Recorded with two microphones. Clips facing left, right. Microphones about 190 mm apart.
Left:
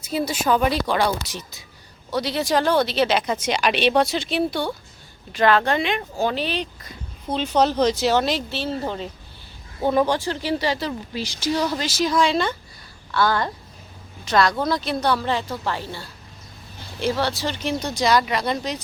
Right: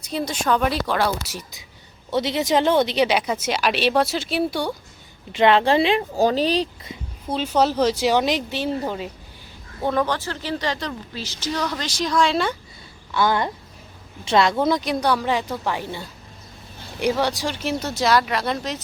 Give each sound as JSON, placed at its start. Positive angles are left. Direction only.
{"t": 0.0, "sound": "speech", "side_deg": 5}
{"t": 2.0, "sound": "speech", "side_deg": -20}
{"t": 5.3, "sound": "speech", "side_deg": -25}
{"t": 7.3, "sound": "speech", "side_deg": -5}
{"t": 9.8, "sound": "speech", "side_deg": 10}
{"t": 13.1, "sound": "a woman's voice", "side_deg": -15}